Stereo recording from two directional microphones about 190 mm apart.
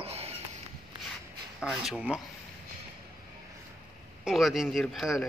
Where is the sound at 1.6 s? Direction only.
5° right (ahead or behind).